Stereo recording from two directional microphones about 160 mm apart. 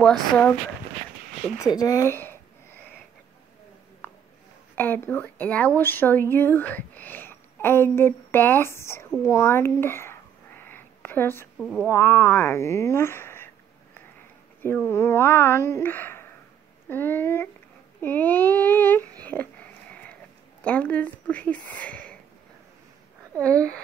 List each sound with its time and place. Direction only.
0.0 s speech: 5° left (ahead or behind)
1.4 s a sound: 20° left (ahead or behind)
4.7 s speech: 10° left (ahead or behind)
11.5 s speech: centre (ahead or behind)
11.8 s speech: 15° left (ahead or behind)
14.9 s speech: 15° left (ahead or behind)
18.0 s a sound: 10° left (ahead or behind)
20.6 s speech: 10° left (ahead or behind)
23.4 s speech: 5° left (ahead or behind)